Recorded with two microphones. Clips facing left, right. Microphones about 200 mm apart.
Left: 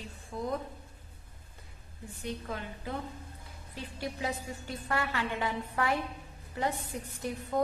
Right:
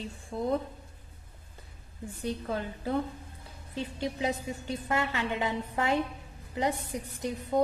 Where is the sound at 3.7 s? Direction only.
20° right (ahead or behind).